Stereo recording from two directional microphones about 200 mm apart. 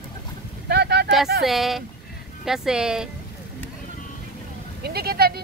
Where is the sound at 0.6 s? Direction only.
55° right (ahead or behind).